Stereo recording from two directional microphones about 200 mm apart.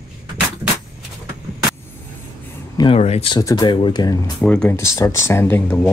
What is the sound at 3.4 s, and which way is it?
Speech, 20° left (ahead or behind).